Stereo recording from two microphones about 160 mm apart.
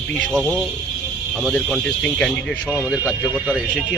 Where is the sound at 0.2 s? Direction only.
5° left (ahead or behind).